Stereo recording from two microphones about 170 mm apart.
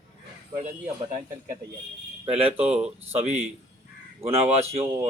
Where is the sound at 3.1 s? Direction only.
40° right (ahead or behind).